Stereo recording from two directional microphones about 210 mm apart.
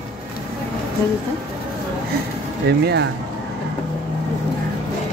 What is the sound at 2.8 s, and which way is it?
Speech, 50° right (ahead or behind).